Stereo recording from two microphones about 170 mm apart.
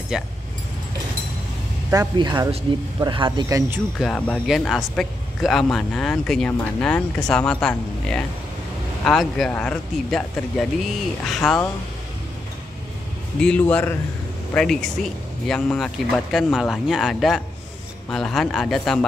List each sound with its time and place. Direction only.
0.1 s speech: 5° right (ahead or behind)
1.9 s a man's voice: 20° right (ahead or behind)
4.0 s speech: 5° left (ahead or behind)
13.4 s speech: 5° left (ahead or behind)